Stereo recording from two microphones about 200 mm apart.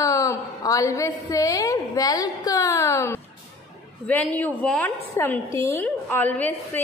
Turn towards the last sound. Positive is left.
turn(degrees=10)  # may be behind; listen again after turning